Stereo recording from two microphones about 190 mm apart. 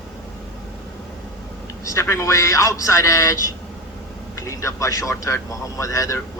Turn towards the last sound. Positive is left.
turn(degrees=15)  # may be behind; listen again after turning